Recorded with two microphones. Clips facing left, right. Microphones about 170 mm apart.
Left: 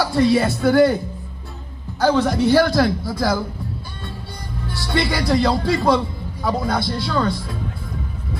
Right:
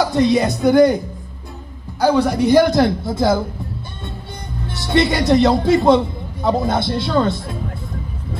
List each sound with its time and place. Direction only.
0.0 s a man's voice: 20° right (ahead or behind)
4.6 s a man's voice: 20° right (ahead or behind)